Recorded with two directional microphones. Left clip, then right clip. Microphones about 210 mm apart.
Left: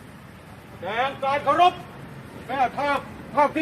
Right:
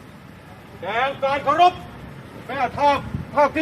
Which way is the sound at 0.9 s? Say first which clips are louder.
Right 3 dB; 30° right (ahead or behind).